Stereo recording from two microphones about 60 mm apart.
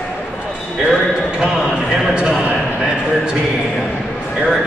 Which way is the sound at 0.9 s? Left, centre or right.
Centre.